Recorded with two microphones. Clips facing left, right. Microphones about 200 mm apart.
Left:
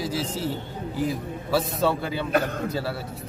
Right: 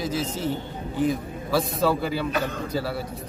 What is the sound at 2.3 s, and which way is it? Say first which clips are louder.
Speech: left 3 dB; 55° left (ahead or behind).